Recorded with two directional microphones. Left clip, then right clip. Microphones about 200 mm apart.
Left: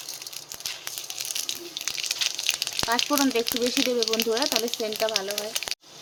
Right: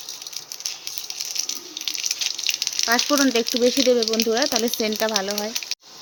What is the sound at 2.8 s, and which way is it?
Speech, 25° right (ahead or behind).